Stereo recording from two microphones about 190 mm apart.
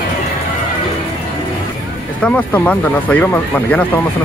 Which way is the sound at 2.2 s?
5° left (ahead or behind).